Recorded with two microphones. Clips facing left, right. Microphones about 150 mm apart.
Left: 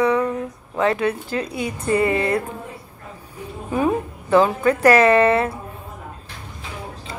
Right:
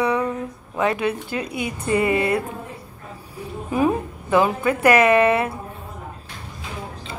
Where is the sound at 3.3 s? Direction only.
10° right (ahead or behind).